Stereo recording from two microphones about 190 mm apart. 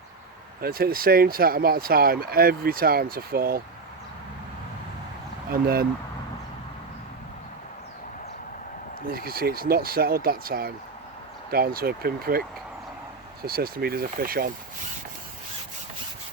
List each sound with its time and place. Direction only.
0.6 s speech: 50° right (ahead or behind)
5.5 s speech: 50° right (ahead or behind)
9.0 s speech: 50° right (ahead or behind)